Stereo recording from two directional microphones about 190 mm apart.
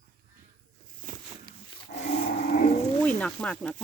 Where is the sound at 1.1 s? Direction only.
45° right (ahead or behind).